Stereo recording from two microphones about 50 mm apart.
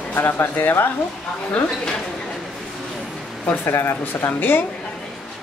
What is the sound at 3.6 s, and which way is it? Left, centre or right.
Speech, left.